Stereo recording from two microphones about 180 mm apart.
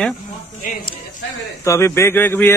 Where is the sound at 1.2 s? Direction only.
90° left.